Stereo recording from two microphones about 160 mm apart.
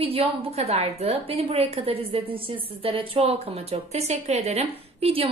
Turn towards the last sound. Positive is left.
turn(degrees=-35)  # may be behind; listen again after turning